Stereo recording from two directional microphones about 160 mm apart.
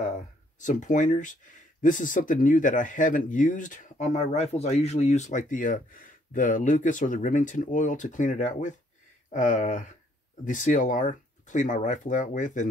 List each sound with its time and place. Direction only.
0.6 s speech: 50° left (ahead or behind)